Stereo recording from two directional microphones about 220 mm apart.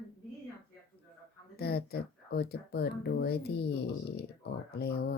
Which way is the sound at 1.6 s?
45° left (ahead or behind).